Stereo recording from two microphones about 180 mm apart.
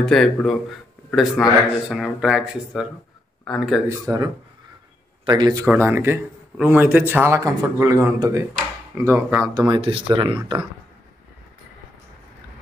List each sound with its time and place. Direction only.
0.0 s speech: centre (ahead or behind)
4.0 s speech: 20° right (ahead or behind)
5.7 s speech: 10° right (ahead or behind)